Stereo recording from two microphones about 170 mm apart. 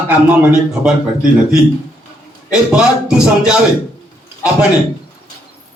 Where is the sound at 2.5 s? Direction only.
5° right (ahead or behind).